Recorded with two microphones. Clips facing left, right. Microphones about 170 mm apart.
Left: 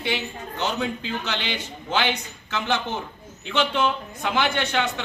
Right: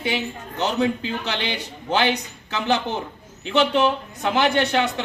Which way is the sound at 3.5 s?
40° right (ahead or behind).